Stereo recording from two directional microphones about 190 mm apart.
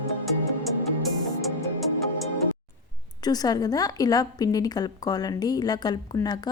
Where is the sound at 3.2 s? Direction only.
20° left (ahead or behind).